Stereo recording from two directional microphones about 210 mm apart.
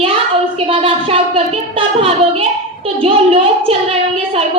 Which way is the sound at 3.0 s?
25° right (ahead or behind).